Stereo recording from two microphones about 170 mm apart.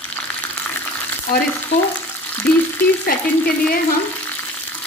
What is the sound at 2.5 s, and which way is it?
Speech, 10° left (ahead or behind).